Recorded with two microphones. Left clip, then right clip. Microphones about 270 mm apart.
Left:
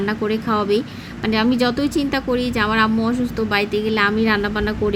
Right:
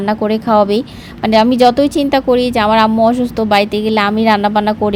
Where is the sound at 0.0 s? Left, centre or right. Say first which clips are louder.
Right 6 dB; centre.